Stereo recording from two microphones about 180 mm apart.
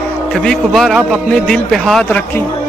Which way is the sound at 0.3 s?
Centre (ahead or behind).